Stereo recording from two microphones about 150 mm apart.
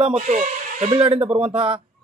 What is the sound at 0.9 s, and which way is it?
Speech, 40° right (ahead or behind).